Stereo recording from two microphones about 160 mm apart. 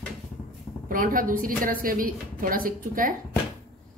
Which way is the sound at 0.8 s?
60° right (ahead or behind).